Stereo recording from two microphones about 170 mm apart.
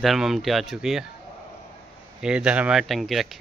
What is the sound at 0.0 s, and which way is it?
Speech, centre (ahead or behind).